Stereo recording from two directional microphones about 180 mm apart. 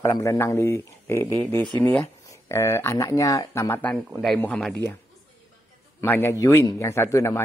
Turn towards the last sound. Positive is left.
turn(degrees=15)  # may be behind; listen again after turning